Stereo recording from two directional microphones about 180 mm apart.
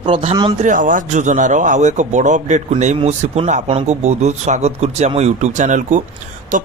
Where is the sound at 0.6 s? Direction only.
45° right (ahead or behind).